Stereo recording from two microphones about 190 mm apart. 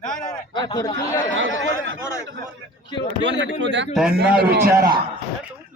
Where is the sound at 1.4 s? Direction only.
85° right.